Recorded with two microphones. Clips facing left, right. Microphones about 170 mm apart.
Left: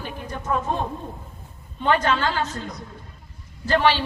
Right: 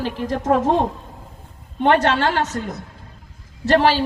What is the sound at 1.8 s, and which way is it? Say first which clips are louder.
Speech: right 5 dB; 65° right (ahead or behind).